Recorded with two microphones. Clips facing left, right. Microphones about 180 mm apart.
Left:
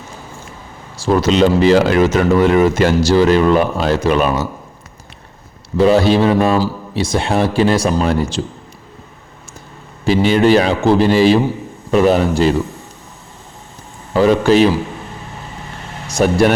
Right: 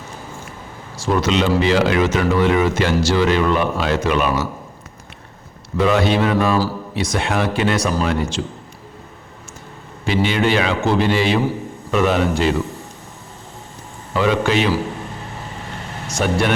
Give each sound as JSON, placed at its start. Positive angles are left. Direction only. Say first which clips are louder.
{"t": 0.9, "sound": "speech", "louder": "left 5 dB", "side_deg": 35}
{"t": 5.7, "sound": "speech", "louder": "left 5 dB", "side_deg": 35}
{"t": 10.1, "sound": "speech", "louder": "left 6 dB", "side_deg": 40}
{"t": 14.1, "sound": "speech", "louder": "left 6 dB", "side_deg": 40}
{"t": 16.0, "sound": "speech", "louder": "left 6 dB", "side_deg": 35}